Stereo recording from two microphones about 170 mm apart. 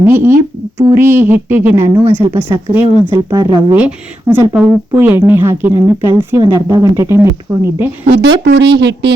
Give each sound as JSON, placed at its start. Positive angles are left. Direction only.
{"t": 0.0, "sound": "speech", "side_deg": -15}
{"t": 3.8, "sound": "speech", "side_deg": -10}
{"t": 8.0, "sound": "speech", "side_deg": -80}